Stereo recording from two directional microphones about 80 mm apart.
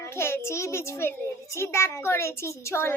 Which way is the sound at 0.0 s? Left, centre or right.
Left.